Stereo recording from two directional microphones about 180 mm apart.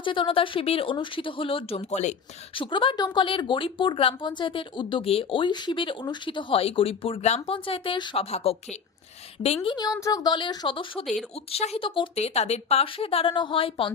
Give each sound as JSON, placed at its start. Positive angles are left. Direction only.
{"t": 0.0, "sound": "speech", "side_deg": 30}
{"t": 2.6, "sound": "speech", "side_deg": 30}
{"t": 9.6, "sound": "speech", "side_deg": 20}